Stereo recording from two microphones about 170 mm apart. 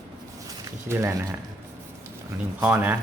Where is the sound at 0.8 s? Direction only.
15° right (ahead or behind).